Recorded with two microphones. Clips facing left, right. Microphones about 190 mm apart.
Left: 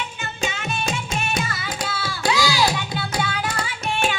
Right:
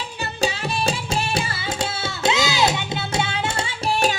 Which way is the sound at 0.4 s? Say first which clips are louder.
Right 4 dB; 30° right (ahead or behind).